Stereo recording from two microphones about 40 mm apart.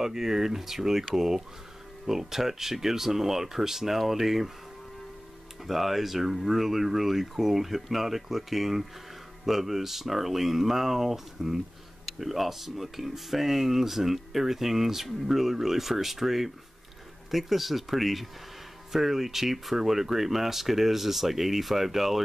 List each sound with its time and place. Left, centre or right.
0.0 s speech: centre
5.7 s speech: centre